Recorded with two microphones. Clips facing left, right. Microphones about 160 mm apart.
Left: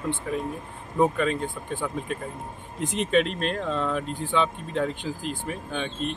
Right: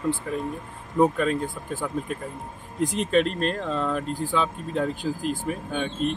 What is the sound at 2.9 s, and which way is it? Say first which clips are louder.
Speech: even; centre (ahead or behind).